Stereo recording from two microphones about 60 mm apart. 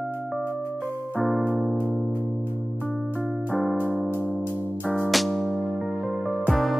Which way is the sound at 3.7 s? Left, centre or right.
Right.